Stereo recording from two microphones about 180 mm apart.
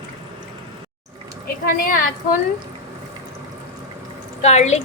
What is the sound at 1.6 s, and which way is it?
Speech, 55° left (ahead or behind).